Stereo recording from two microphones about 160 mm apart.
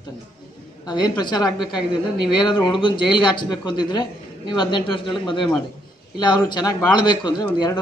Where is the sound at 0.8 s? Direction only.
25° left (ahead or behind).